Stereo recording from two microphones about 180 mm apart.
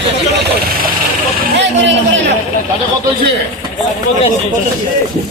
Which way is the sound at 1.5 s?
75° right (ahead or behind).